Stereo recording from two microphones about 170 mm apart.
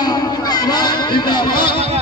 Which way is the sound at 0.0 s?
25° left (ahead or behind).